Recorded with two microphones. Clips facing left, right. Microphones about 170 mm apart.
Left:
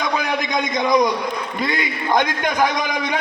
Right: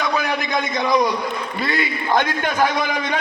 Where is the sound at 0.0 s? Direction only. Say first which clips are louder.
Even; 15° left (ahead or behind).